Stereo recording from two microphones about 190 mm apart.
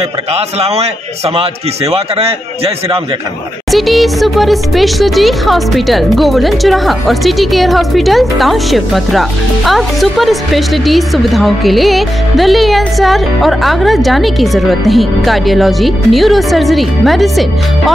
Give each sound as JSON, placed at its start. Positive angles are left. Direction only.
{"t": 0.3, "sound": "a man's voice", "side_deg": -35}
{"t": 3.7, "sound": "speech", "side_deg": 0}